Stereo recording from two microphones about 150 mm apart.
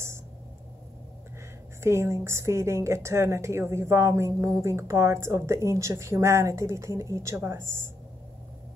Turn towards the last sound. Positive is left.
turn(degrees=-15)  # may be behind; listen again after turning